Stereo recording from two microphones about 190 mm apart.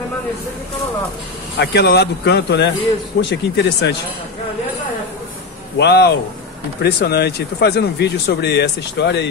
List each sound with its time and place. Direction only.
1.6 s speech: 60° left (ahead or behind)
5.8 s speech: 60° left (ahead or behind)